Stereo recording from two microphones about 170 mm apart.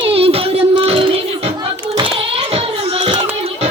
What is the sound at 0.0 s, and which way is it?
Child singing, 35° right (ahead or behind).